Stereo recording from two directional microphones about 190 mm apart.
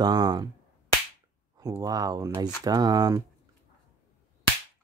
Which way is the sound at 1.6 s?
20° right (ahead or behind).